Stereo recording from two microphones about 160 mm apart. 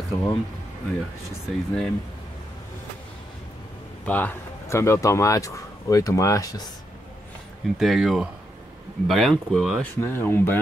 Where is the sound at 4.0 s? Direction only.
10° left (ahead or behind).